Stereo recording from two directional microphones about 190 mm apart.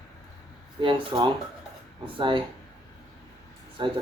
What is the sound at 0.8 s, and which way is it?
Speech, 25° right (ahead or behind).